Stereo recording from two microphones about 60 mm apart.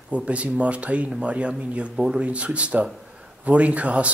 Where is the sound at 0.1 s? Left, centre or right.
Right.